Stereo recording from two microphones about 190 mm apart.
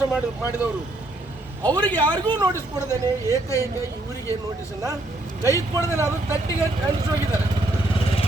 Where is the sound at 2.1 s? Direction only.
25° right (ahead or behind).